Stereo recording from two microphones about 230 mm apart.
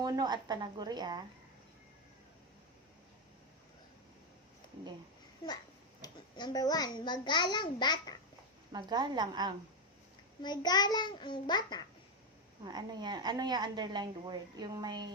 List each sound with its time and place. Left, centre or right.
0.0 s a woman's voice: centre
5.4 s a child's voice: centre
8.7 s a woman's voice: centre
10.4 s a child's voice: centre
12.6 s a woman's voice: centre